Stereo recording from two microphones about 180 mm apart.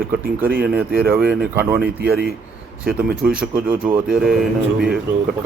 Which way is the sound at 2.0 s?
60° right (ahead or behind).